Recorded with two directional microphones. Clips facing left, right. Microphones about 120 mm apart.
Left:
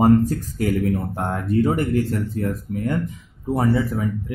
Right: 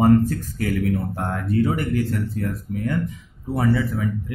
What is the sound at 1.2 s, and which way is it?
Speech, 25° left (ahead or behind).